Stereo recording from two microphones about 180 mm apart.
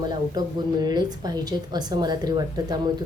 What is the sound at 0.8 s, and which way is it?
A woman's voice, 20° right (ahead or behind).